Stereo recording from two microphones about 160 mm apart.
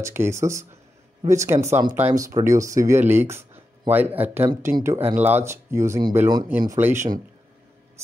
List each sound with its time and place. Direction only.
0.0 s speech: 15° right (ahead or behind)